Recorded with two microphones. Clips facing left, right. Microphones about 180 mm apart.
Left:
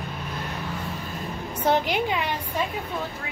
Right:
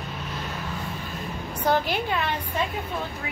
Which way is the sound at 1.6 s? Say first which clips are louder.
Left 1 dB; 20° left (ahead or behind).